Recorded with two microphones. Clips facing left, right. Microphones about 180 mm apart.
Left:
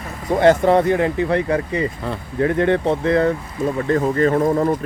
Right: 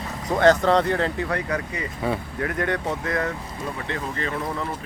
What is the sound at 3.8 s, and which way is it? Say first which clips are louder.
Speech: left 15 dB; 45° left (ahead or behind).